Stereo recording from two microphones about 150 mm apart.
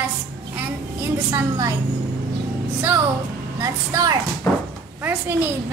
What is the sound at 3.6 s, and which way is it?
Speech, 25° right (ahead or behind).